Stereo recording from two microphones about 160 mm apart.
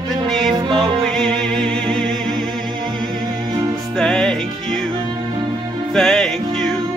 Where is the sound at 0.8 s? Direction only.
Centre (ahead or behind).